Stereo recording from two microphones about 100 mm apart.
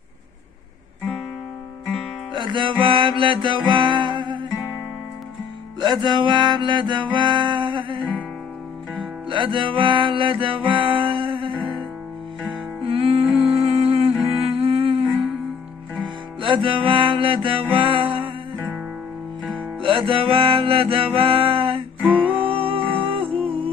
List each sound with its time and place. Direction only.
2.3 s music: 50° right (ahead or behind)
5.8 s music: 50° right (ahead or behind)
9.3 s music: 55° right (ahead or behind)
12.8 s music: 70° right (ahead or behind); by 14.1 s 90° right
14.3 s music: 80° right
16.3 s music: 55° right (ahead or behind)
19.8 s music: 60° right (ahead or behind)